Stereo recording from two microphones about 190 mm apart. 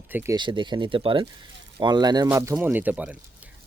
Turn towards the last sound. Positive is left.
turn(degrees=-5)  # may be behind; listen again after turning